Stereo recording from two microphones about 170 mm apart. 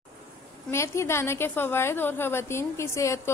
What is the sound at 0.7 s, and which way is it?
A woman's voice, 15° left (ahead or behind).